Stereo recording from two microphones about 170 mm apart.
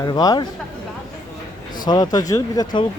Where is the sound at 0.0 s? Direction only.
20° left (ahead or behind).